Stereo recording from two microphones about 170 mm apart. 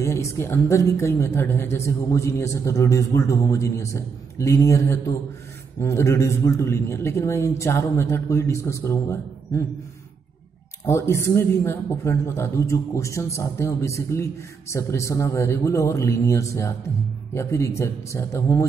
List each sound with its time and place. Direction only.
0.0 s a man's voice: 15° left (ahead or behind)
10.9 s a man's voice: 15° left (ahead or behind)